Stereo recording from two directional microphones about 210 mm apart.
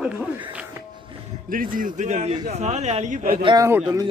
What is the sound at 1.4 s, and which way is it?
Speech, 40° right (ahead or behind).